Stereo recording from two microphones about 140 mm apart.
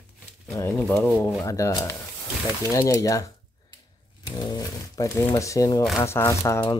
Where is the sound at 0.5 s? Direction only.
20° left (ahead or behind).